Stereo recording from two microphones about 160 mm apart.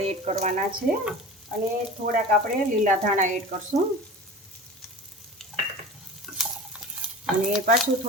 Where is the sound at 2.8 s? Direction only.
55° right (ahead or behind).